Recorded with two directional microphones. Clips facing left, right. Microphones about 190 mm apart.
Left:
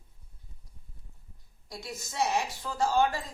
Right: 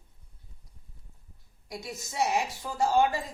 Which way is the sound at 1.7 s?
15° right (ahead or behind).